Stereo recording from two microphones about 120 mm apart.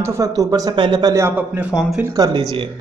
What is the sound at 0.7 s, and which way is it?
Speech, 40° right (ahead or behind).